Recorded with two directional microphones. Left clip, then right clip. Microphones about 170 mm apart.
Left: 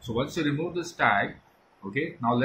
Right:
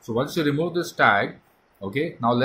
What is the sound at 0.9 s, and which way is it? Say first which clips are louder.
Speech: right 5 dB; 70° right (ahead or behind).